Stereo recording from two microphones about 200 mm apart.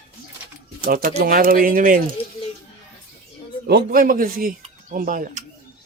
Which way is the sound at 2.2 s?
30° left (ahead or behind).